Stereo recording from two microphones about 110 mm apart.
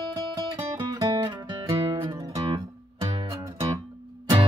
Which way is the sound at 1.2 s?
55° right (ahead or behind).